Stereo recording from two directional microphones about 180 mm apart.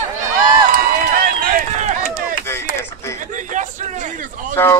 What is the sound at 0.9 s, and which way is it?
Run, 50° right (ahead or behind).